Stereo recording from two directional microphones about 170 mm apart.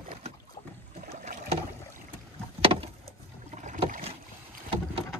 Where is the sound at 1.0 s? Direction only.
45° right (ahead or behind).